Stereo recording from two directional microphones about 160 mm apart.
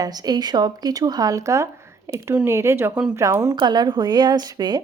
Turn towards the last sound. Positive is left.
turn(degrees=-25)  # may be behind; listen again after turning